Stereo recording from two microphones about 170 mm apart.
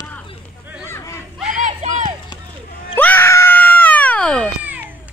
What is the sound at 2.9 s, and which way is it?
Screaming, 10° left (ahead or behind).